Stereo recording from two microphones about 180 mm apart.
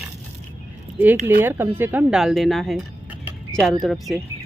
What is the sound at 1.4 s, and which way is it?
Speech, 10° right (ahead or behind).